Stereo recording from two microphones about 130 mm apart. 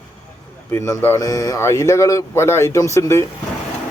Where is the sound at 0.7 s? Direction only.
20° left (ahead or behind).